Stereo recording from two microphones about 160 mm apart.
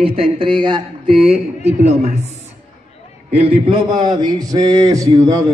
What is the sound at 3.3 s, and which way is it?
A man's voice, 35° right (ahead or behind).